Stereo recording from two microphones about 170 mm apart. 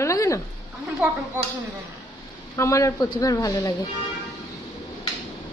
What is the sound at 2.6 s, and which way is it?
Speech, 20° left (ahead or behind).